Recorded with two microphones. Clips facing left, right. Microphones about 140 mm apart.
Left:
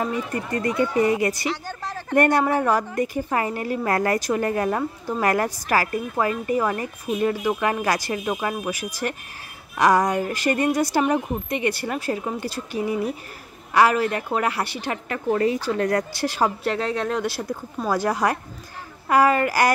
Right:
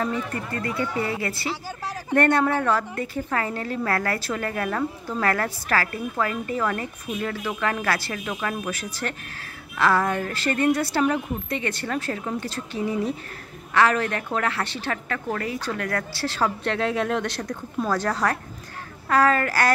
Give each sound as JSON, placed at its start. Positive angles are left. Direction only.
{"t": 0.0, "sound": "a woman's voice", "side_deg": 15}
{"t": 1.5, "sound": "speech", "side_deg": -5}
{"t": 2.1, "sound": "a woman's voice", "side_deg": 10}